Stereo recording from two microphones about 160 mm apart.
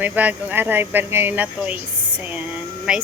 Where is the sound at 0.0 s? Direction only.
10° right (ahead or behind).